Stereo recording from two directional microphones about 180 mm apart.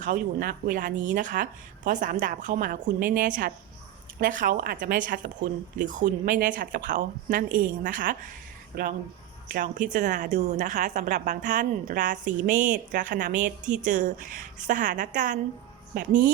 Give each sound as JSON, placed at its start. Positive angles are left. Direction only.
{"t": 0.0, "sound": "a woman's voice", "side_deg": -50}